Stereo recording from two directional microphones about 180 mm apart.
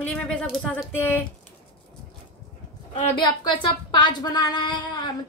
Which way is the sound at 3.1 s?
25° left (ahead or behind).